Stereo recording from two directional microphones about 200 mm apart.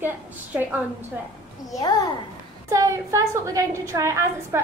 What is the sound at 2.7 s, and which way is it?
A woman's voice, 15° right (ahead or behind).